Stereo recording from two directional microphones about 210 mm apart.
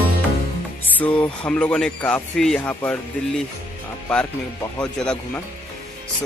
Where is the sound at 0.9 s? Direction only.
5° left (ahead or behind).